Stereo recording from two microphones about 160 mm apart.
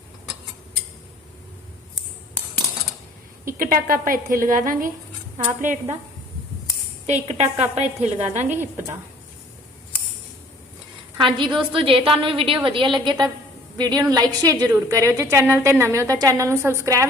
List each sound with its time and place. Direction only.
3.4 s a woman's voice: 65° right (ahead or behind)
7.1 s a woman's voice: 45° right (ahead or behind)
11.2 s a woman's voice: 30° right (ahead or behind)